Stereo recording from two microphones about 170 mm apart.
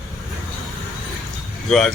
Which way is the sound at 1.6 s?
Centre (ahead or behind).